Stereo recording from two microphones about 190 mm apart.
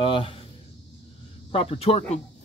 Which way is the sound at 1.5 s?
30° left (ahead or behind).